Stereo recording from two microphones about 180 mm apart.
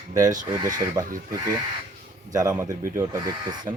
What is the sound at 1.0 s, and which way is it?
Speech, 20° right (ahead or behind).